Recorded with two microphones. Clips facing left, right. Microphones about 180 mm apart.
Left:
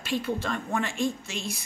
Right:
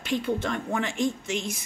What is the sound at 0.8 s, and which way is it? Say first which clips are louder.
Speech: right 1 dB; 20° right (ahead or behind).